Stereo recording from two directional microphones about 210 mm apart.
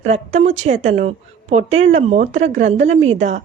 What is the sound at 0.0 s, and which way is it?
Speech, 30° right (ahead or behind).